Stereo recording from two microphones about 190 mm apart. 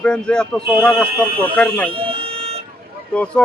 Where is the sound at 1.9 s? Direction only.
30° right (ahead or behind).